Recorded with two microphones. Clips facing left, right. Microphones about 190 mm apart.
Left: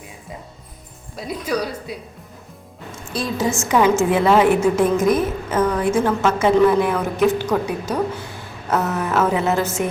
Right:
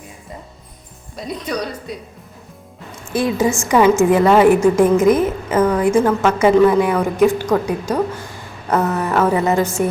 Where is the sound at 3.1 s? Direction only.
55° right (ahead or behind).